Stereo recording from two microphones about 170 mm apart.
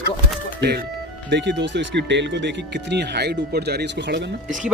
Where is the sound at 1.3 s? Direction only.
90° right.